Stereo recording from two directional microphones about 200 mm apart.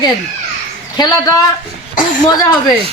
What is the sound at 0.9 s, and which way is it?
Speech, 20° left (ahead or behind).